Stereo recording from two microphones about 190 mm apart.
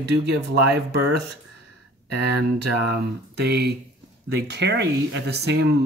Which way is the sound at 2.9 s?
60° right (ahead or behind).